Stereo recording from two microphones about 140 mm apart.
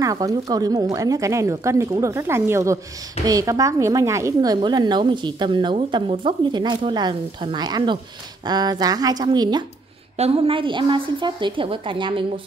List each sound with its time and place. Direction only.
0.0 s a woman's voice: 25° right (ahead or behind)
10.1 s a woman's voice: 45° right (ahead or behind)